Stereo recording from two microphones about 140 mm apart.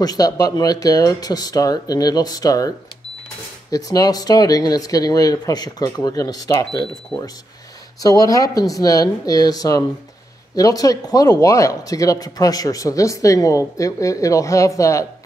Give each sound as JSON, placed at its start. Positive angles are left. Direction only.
{"t": 0.0, "sound": "speech", "side_deg": 25}
{"t": 3.7, "sound": "speech", "side_deg": 25}
{"t": 8.0, "sound": "speech", "side_deg": 25}